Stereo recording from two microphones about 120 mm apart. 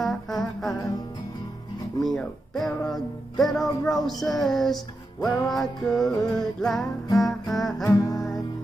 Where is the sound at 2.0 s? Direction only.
Centre (ahead or behind).